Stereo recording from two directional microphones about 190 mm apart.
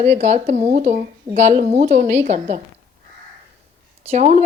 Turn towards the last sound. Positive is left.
turn(degrees=-35)  # may be behind; listen again after turning